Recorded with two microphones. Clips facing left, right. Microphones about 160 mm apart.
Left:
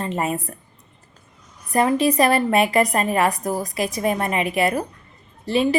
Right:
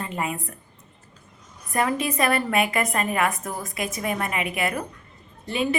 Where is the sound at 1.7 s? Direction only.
30° left (ahead or behind).